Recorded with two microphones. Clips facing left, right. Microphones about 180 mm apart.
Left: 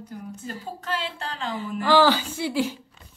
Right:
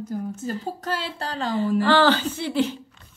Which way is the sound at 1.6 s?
10° left (ahead or behind).